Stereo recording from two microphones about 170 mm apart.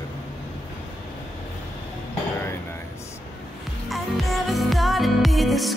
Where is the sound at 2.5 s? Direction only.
15° left (ahead or behind).